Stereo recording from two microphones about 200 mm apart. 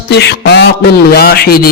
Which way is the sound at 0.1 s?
55° left (ahead or behind).